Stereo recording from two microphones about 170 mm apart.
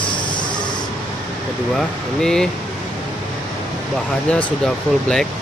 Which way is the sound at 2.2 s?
5° left (ahead or behind).